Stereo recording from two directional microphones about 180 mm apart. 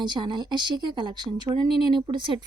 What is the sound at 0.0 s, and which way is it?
A woman's voice, 25° right (ahead or behind).